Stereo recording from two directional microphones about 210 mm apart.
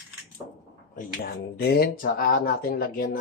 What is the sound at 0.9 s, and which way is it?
Speech, 45° left (ahead or behind).